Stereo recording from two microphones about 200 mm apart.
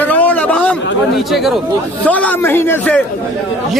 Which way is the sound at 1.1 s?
Centre (ahead or behind).